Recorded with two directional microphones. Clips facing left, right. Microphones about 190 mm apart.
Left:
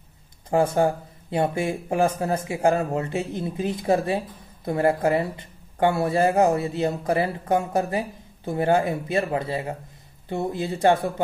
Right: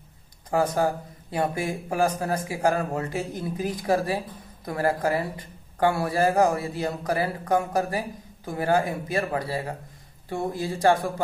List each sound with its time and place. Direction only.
0.5 s speech: 25° left (ahead or behind)